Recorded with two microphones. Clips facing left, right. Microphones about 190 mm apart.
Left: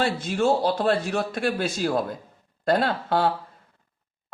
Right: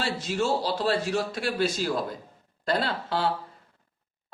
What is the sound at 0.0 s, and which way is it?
Speech, 55° left (ahead or behind).